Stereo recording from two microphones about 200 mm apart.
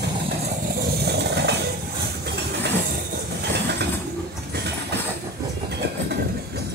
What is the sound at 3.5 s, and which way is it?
Train, 55° right (ahead or behind).